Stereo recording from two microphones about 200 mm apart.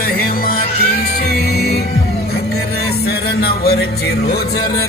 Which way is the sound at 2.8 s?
50° left (ahead or behind).